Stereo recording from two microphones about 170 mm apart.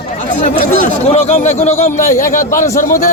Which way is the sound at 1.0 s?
40° left (ahead or behind).